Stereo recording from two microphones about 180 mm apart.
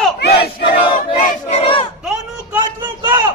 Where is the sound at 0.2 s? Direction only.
60° left (ahead or behind).